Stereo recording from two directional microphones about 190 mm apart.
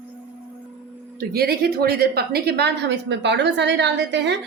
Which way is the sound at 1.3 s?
55° right (ahead or behind).